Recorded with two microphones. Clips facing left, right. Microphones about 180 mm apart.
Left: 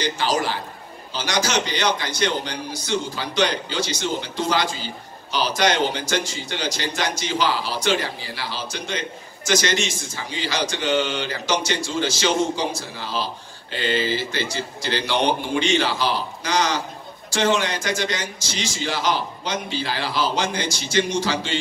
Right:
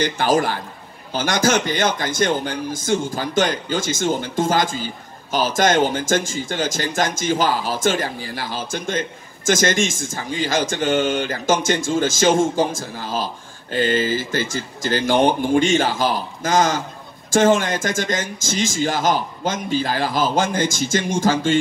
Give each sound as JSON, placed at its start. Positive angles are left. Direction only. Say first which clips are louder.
{"t": 0.0, "sound": "a man's voice", "louder": "right 5 dB", "side_deg": -50}